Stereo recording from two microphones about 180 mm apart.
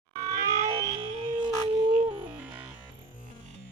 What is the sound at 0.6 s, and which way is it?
Theremin, 30° right (ahead or behind).